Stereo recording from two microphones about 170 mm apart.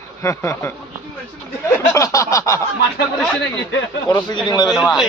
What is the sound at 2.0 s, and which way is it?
Speech, 20° left (ahead or behind).